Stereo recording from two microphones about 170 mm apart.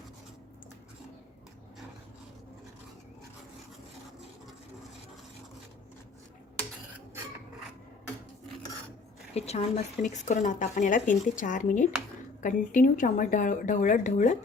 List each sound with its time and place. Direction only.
9.3 s speech: 40° left (ahead or behind)